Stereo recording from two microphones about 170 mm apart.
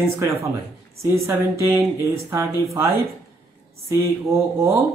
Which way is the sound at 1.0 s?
15° right (ahead or behind).